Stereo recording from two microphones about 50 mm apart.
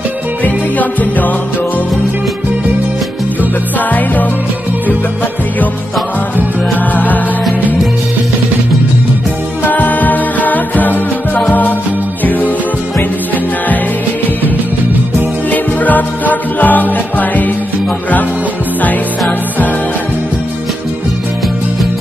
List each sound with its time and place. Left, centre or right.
0.7 s music: left
3.9 s music: left
9.7 s music: left
15.5 s music: left